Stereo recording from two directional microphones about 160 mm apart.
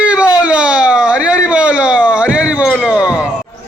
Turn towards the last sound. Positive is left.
turn(degrees=-5)  # may be behind; listen again after turning